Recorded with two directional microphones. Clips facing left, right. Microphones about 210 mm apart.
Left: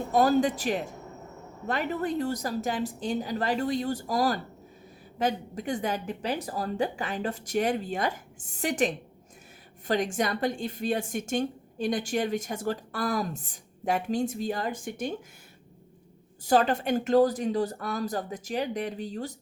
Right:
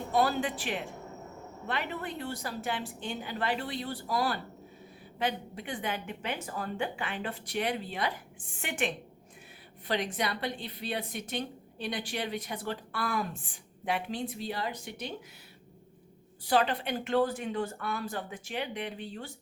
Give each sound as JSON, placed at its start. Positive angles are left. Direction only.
{"t": 0.1, "sound": "a woman's voice", "side_deg": 45}
{"t": 16.4, "sound": "speech", "side_deg": 45}